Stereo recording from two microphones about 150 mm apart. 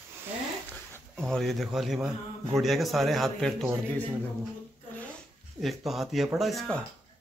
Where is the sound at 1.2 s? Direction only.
Centre (ahead or behind).